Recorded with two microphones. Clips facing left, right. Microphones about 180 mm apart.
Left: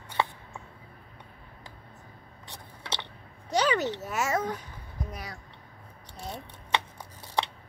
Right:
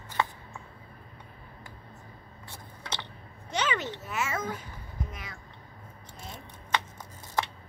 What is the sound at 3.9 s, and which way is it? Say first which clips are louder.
Speech: left 4 dB; 40° left (ahead or behind).